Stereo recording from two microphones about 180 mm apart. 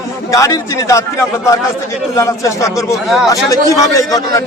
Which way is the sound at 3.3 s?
20° left (ahead or behind).